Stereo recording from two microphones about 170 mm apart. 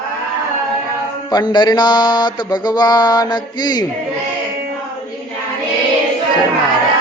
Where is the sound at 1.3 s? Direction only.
25° left (ahead or behind).